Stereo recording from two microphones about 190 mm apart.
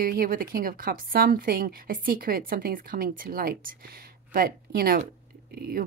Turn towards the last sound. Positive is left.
turn(degrees=-55)  # may be behind; listen again after turning